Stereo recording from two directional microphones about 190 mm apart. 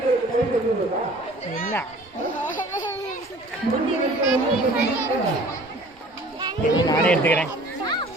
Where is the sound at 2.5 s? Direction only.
45° left (ahead or behind).